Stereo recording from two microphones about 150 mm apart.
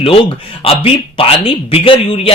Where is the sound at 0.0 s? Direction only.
40° left (ahead or behind).